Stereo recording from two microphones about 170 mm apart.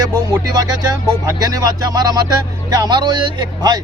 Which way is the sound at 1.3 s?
20° right (ahead or behind).